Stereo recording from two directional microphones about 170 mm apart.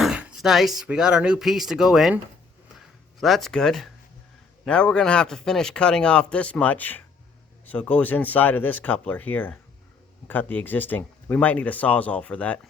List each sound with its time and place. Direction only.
0.0 s speech: 5° right (ahead or behind)
2.7 s a sound: centre (ahead or behind)
4.6 s speech: 5° left (ahead or behind)